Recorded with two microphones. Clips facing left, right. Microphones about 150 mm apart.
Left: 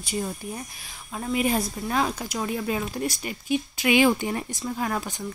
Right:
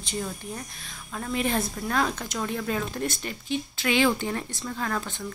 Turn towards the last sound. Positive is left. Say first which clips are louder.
# left 2 dB
turn(degrees=15)  # may be behind; listen again after turning